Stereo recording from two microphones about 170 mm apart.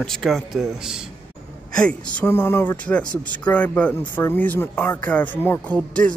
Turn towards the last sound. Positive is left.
turn(degrees=10)  # may be behind; listen again after turning